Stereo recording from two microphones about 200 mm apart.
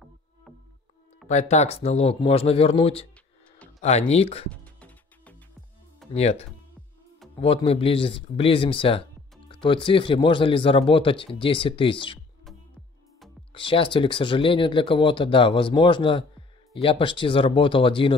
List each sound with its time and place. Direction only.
1.2 s speech: 35° left (ahead or behind)
4.5 s music: 5° left (ahead or behind)
6.1 s speech: 30° left (ahead or behind)
13.5 s speech: 25° left (ahead or behind)